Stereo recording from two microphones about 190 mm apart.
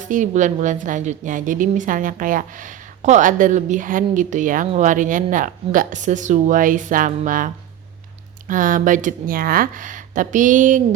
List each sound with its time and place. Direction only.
0.0 s a woman's voice: 40° right (ahead or behind)